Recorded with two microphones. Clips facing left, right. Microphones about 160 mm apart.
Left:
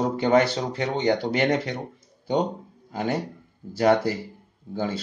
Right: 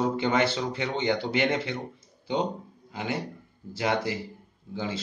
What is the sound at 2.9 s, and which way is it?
Speech, 45° left (ahead or behind).